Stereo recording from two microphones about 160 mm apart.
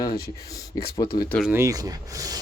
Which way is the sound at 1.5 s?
20° right (ahead or behind).